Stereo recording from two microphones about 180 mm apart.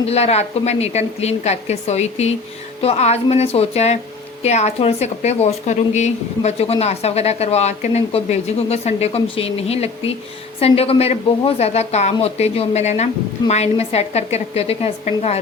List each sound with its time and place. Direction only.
0.0 s a woman's voice: 35° left (ahead or behind)